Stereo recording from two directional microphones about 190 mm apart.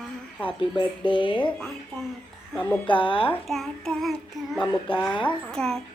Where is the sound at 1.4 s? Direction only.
5° left (ahead or behind).